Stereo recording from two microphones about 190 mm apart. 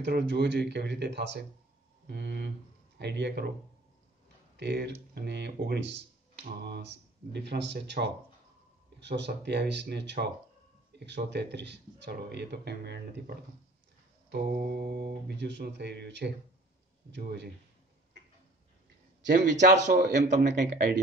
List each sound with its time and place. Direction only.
0.0 s speech: 60° right (ahead or behind)
4.6 s speech: 65° right (ahead or behind)
14.3 s speech: 50° right (ahead or behind)
19.6 s speech: 40° right (ahead or behind)
20.7 s speech: 55° right (ahead or behind)